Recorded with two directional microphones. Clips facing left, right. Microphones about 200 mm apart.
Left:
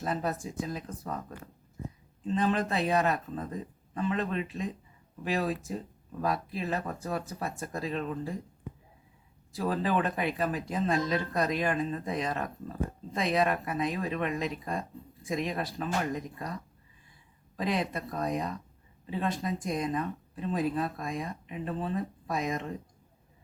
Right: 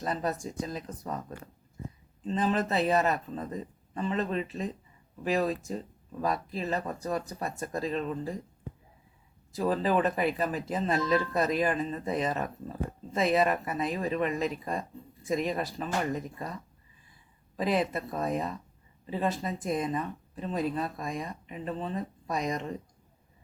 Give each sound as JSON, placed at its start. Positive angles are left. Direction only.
{"t": 0.0, "sound": "speech", "side_deg": 5}
{"t": 2.2, "sound": "speech", "side_deg": 0}
{"t": 9.5, "sound": "speech", "side_deg": 0}
{"t": 17.6, "sound": "speech", "side_deg": 0}